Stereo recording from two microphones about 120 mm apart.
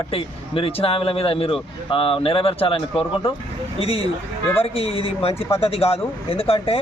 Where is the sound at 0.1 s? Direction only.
50° left (ahead or behind).